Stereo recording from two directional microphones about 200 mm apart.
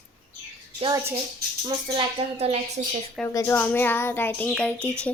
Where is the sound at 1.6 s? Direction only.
30° right (ahead or behind).